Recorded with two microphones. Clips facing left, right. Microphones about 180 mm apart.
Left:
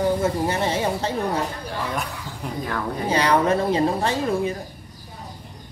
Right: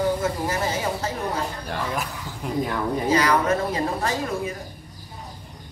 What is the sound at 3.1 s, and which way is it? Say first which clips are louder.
Speech: left 2 dB; 30° left (ahead or behind).